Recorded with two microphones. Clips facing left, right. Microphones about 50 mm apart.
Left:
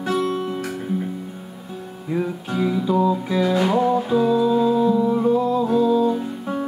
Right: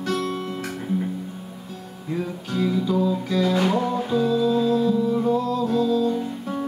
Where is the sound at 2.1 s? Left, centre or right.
Centre.